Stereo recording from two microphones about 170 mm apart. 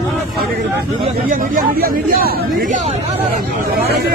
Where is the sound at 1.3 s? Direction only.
55° right (ahead or behind).